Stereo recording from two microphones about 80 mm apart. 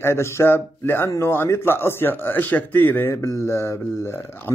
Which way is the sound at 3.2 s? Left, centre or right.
Left.